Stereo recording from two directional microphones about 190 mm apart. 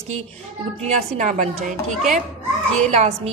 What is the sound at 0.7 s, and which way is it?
Speech, 35° right (ahead or behind).